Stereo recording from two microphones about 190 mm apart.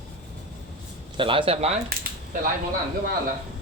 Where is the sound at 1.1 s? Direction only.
25° right (ahead or behind).